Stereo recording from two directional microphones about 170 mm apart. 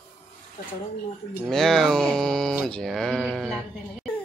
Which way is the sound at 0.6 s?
40° left (ahead or behind).